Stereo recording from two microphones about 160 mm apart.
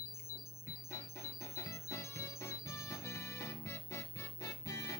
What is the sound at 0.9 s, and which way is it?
Music, 20° left (ahead or behind).